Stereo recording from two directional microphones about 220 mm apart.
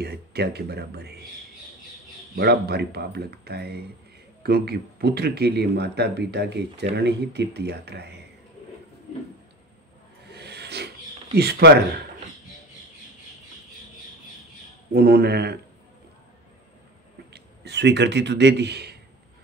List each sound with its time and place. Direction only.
0.0 s speech: 45° right (ahead or behind)
2.3 s speech: 45° right (ahead or behind)
10.3 s a sound: 50° right (ahead or behind)
11.3 s speech: 45° right (ahead or behind)
15.0 s speech: 45° right (ahead or behind)
17.3 s speech: 50° right (ahead or behind)